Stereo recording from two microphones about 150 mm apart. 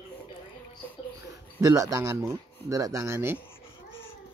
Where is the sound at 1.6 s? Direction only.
20° right (ahead or behind).